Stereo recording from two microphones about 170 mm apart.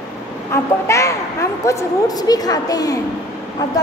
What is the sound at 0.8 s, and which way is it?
A woman's voice, 15° left (ahead or behind).